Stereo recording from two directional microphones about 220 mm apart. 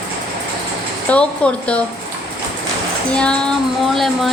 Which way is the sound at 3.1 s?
5° left (ahead or behind).